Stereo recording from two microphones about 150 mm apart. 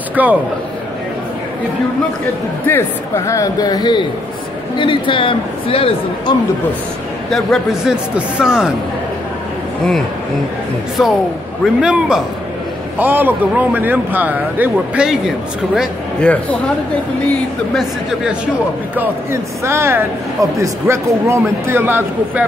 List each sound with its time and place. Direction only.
0.1 s a man's voice: 10° right (ahead or behind)
2.6 s a man's voice: 15° left (ahead or behind); by 6.3 s 40° left (ahead or behind)
7.2 s a man's voice: centre (ahead or behind)
11.0 s a man's voice: centre (ahead or behind)
15.7 s a man's voice: 5° left (ahead or behind)
18.9 s speech: 20° right (ahead or behind)